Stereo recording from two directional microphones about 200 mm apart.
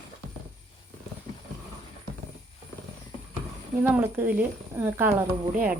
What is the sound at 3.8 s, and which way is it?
Speech, 10° right (ahead or behind).